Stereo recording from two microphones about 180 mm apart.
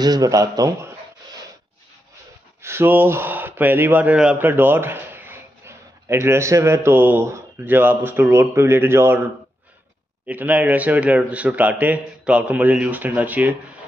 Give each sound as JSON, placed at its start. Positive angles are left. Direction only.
{"t": 0.0, "sound": "a man's voice", "side_deg": -20}
{"t": 2.6, "sound": "speech", "side_deg": -15}